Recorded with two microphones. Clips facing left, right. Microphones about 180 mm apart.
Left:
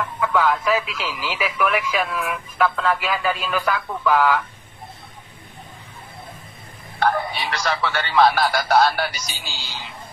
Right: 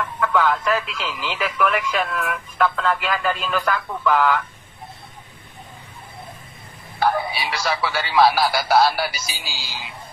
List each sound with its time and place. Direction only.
0.2 s speech: 5° left (ahead or behind)
7.0 s speech: 5° right (ahead or behind)